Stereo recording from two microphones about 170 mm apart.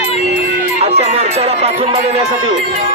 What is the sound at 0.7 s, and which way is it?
Speech, 40° right (ahead or behind).